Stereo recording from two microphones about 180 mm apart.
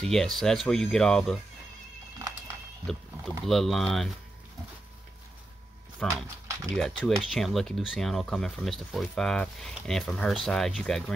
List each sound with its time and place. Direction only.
0.0 s speech: 5° left (ahead or behind)
2.1 s music: 20° right (ahead or behind)
2.9 s speech: centre (ahead or behind)
6.0 s speech: 15° right (ahead or behind)
6.7 s speech: 5° left (ahead or behind)